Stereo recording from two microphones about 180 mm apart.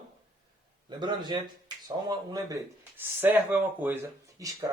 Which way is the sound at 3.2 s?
10° right (ahead or behind).